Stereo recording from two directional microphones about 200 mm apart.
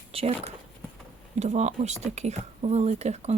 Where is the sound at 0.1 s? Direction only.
30° right (ahead or behind).